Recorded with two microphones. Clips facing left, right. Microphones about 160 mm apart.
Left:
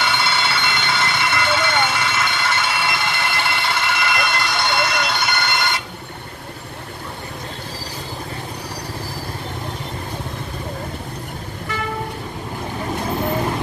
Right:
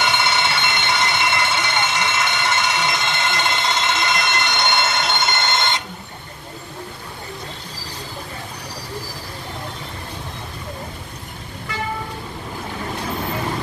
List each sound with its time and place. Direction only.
0.0 s vehicle: 20° right (ahead or behind)